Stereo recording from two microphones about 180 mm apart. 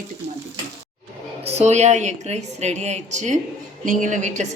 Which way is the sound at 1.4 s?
35° right (ahead or behind).